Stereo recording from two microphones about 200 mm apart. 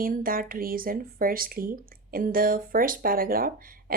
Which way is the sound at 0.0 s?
45° right (ahead or behind).